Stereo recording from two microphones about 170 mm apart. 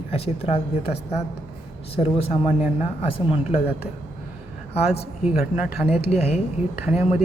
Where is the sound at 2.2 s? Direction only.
35° left (ahead or behind).